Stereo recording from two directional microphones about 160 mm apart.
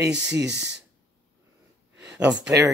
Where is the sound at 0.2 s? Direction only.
90° right.